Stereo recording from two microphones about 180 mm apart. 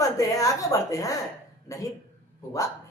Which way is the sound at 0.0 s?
20° left (ahead or behind).